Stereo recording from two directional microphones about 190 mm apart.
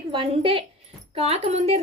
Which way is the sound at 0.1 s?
30° right (ahead or behind).